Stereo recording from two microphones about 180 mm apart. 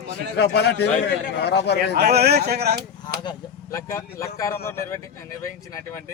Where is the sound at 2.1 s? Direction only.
65° right (ahead or behind).